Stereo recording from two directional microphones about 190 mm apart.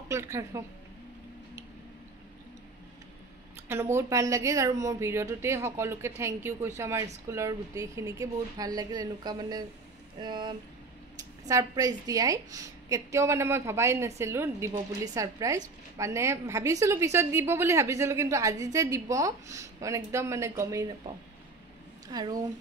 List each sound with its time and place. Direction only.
0.1 s a woman's voice: 15° right (ahead or behind)
3.6 s a woman's voice: 15° right (ahead or behind)
22.0 s speech: 20° right (ahead or behind)